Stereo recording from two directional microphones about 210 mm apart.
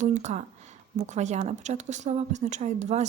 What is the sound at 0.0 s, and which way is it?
Speech, 35° right (ahead or behind).